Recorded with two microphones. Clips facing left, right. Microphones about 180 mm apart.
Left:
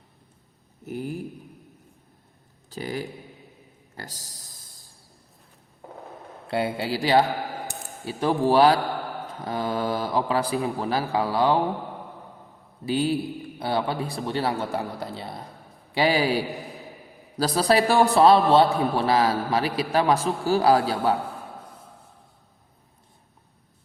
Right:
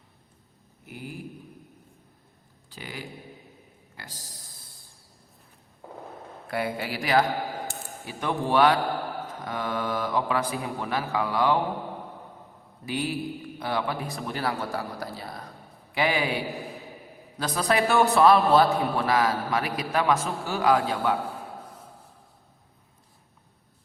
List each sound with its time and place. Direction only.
0.9 s speech: 40° left (ahead or behind)
2.6 s a sound: 40° left (ahead or behind)
3.9 s speech: 40° left (ahead or behind)
6.5 s a man's voice: 25° left (ahead or behind)
12.8 s a man's voice: 30° left (ahead or behind)